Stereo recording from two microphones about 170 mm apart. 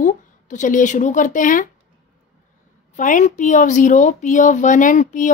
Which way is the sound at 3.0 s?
50° left (ahead or behind).